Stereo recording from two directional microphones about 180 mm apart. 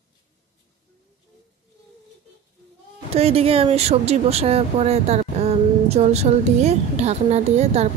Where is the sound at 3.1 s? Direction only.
35° right (ahead or behind).